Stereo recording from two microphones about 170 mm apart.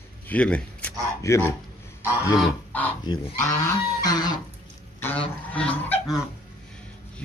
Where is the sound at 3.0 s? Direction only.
25° left (ahead or behind).